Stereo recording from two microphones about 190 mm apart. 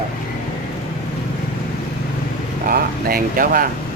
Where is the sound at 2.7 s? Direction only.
50° right (ahead or behind).